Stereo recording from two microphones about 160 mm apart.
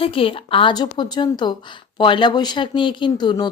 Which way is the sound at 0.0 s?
35° left (ahead or behind).